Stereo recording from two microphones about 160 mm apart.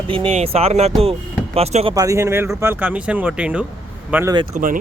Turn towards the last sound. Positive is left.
turn(degrees=-60)  # may be behind; listen again after turning